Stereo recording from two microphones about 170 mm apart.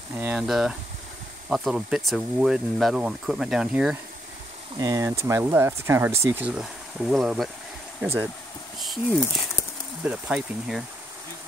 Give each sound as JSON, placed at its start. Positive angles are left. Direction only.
{"t": 0.1, "sound": "speech", "side_deg": -10}
{"t": 4.7, "sound": "speech", "side_deg": -20}
{"t": 8.7, "sound": "a sound", "side_deg": 0}
{"t": 10.0, "sound": "speech", "side_deg": -5}